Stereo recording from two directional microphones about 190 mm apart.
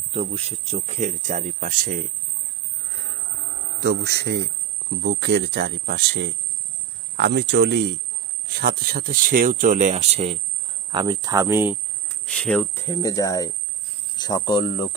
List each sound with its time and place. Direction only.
0.1 s speech: 30° right (ahead or behind)
3.8 s speech: 60° right (ahead or behind)
8.5 s speech: 55° right (ahead or behind); by 10.3 s 35° right (ahead or behind)
10.9 s speech: 20° right (ahead or behind)
12.2 s speech: 5° left (ahead or behind); by 14.8 s 25° left (ahead or behind)